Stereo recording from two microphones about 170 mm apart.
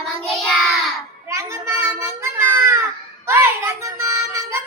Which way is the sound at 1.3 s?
15° right (ahead or behind).